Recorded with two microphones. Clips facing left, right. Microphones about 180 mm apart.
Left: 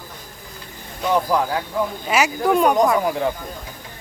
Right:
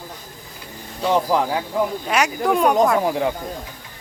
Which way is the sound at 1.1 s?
20° right (ahead or behind).